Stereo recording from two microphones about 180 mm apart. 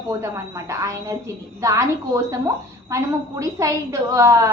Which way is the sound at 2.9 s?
20° right (ahead or behind).